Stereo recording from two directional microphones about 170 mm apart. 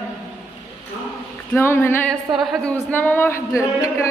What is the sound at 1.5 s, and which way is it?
Speech, 15° left (ahead or behind).